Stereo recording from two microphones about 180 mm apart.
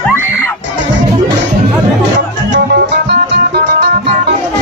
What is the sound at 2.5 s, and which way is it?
Music, 75° right (ahead or behind).